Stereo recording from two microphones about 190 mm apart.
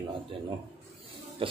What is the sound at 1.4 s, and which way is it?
Speech, 30° right (ahead or behind).